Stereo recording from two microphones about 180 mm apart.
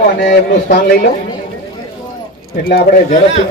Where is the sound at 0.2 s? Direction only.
55° left (ahead or behind).